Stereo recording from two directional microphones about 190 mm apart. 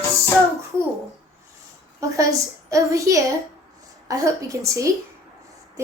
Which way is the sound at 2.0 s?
15° right (ahead or behind).